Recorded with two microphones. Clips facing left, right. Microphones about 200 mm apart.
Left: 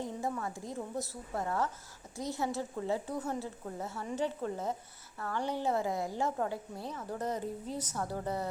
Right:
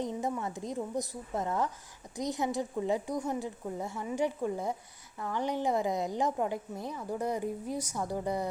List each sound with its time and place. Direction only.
0.0 s a woman's voice: 20° right (ahead or behind)